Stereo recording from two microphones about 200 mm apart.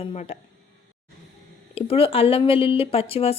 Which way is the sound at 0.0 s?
30° left (ahead or behind).